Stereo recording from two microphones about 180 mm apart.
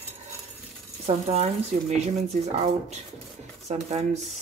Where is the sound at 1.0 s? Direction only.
35° right (ahead or behind).